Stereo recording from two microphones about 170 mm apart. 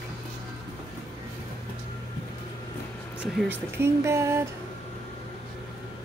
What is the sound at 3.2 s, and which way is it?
Speech, 5° right (ahead or behind).